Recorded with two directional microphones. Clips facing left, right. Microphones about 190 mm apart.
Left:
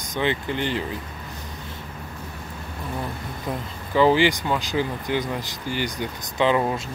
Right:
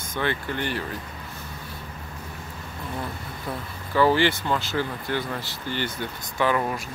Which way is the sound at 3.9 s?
15° left (ahead or behind).